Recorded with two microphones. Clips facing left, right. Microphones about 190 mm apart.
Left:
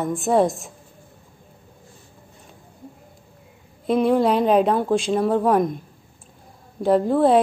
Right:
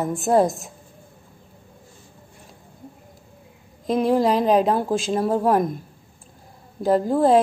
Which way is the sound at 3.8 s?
Centre (ahead or behind).